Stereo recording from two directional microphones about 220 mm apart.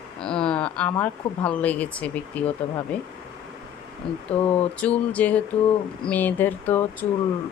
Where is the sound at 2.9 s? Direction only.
5° left (ahead or behind).